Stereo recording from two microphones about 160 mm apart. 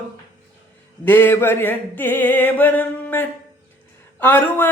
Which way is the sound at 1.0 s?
15° left (ahead or behind).